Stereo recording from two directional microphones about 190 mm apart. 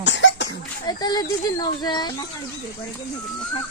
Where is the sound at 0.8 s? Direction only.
20° left (ahead or behind).